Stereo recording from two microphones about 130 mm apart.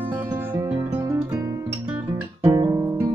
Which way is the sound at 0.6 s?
20° right (ahead or behind).